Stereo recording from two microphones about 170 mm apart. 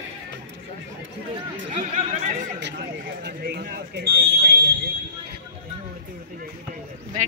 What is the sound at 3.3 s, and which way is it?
Fire alarm, 70° right (ahead or behind).